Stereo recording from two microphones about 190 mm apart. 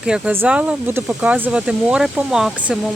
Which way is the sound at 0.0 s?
5° right (ahead or behind).